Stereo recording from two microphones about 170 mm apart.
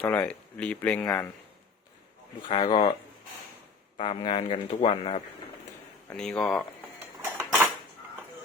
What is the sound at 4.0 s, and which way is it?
Speech, 35° left (ahead or behind).